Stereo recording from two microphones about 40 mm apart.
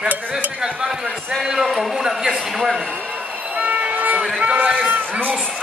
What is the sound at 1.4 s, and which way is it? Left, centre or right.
A man's voice, centre.